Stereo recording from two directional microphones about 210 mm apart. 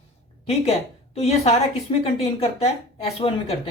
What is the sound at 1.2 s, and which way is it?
A woman's voice, 30° left (ahead or behind).